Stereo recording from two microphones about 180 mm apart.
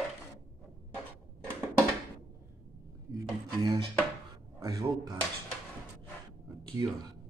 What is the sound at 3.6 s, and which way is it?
Speech, 20° right (ahead or behind).